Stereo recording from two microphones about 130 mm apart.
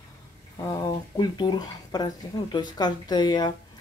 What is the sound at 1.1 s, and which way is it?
Speech, 35° left (ahead or behind).